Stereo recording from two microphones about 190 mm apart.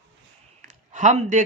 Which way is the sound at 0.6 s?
40° right (ahead or behind).